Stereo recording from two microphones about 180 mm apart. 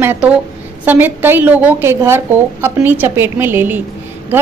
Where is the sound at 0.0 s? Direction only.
10° right (ahead or behind).